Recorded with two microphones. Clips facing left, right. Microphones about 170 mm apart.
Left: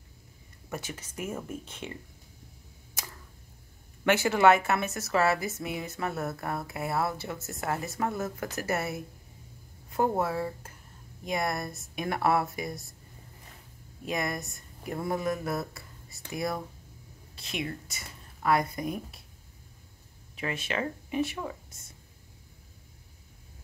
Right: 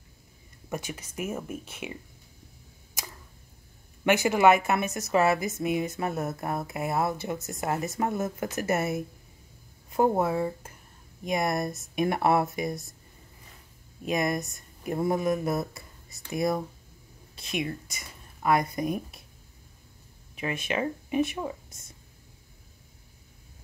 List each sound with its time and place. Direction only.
0.7 s speech: 15° right (ahead or behind)
4.0 s a woman's voice: 15° right (ahead or behind)
14.0 s a woman's voice: 20° right (ahead or behind)
20.3 s speech: 15° right (ahead or behind)